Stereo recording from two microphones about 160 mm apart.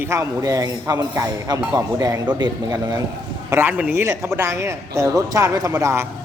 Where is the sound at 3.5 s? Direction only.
15° right (ahead or behind).